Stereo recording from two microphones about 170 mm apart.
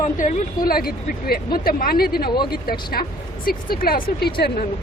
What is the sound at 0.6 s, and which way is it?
Speech, 60° left (ahead or behind).